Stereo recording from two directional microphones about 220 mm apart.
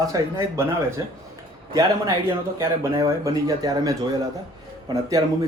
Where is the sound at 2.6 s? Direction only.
15° right (ahead or behind).